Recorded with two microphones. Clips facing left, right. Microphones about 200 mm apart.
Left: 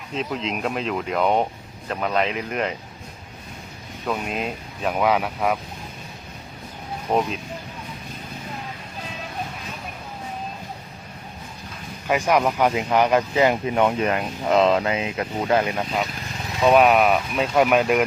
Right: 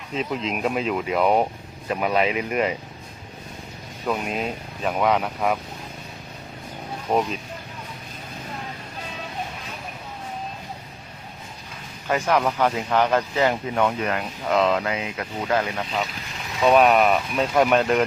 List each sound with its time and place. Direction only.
0.1 s speech: 5° right (ahead or behind)
4.0 s speech: centre (ahead or behind)
7.1 s speech: 5° right (ahead or behind)
12.0 s speech: 15° left (ahead or behind)
16.6 s speech: centre (ahead or behind)